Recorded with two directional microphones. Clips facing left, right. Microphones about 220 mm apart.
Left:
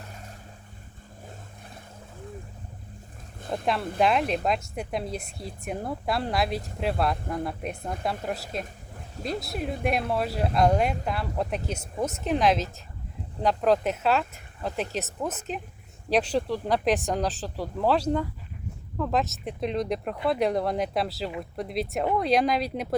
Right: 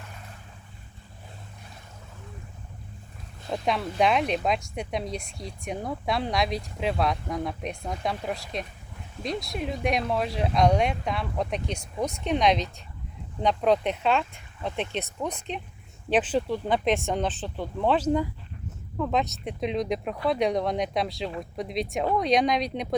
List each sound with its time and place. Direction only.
3.7 s speech: centre (ahead or behind)